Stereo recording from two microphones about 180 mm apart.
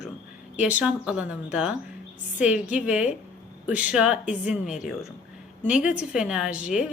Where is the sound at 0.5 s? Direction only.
5° right (ahead or behind).